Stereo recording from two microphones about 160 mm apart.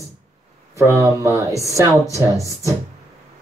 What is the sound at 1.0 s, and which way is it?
Speech, 20° right (ahead or behind).